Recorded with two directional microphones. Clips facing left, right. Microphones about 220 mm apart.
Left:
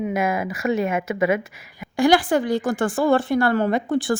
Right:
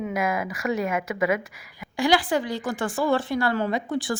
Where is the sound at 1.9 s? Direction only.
50° left (ahead or behind).